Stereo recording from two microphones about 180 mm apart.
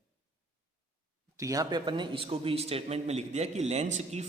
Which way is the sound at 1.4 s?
20° right (ahead or behind).